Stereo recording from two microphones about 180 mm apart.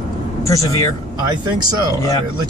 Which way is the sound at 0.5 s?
15° left (ahead or behind).